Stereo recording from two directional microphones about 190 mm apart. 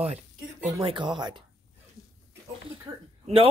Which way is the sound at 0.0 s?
35° right (ahead or behind).